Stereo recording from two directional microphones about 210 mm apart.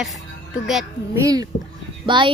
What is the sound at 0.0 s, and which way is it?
Speech, centre (ahead or behind).